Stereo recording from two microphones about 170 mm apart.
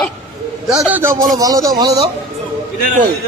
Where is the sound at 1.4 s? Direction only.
20° right (ahead or behind).